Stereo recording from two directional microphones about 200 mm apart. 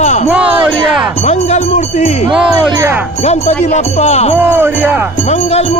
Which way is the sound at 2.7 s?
15° right (ahead or behind).